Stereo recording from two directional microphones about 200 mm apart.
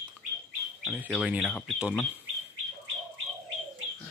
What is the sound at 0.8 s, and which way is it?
Speech, 5° right (ahead or behind).